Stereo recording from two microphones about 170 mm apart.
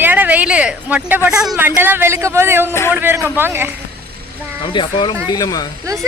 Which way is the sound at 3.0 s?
15° right (ahead or behind).